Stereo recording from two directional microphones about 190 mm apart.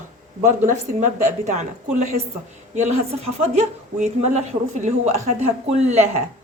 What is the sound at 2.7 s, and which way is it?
A woman's voice, 35° right (ahead or behind).